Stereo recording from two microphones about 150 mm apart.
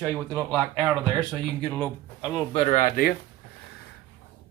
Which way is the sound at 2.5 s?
35° left (ahead or behind).